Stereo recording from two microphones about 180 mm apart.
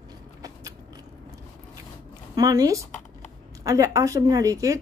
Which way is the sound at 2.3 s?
20° right (ahead or behind).